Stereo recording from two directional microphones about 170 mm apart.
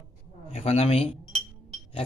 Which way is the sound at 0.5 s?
35° left (ahead or behind).